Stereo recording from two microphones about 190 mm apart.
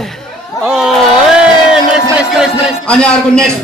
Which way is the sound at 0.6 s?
Centre (ahead or behind).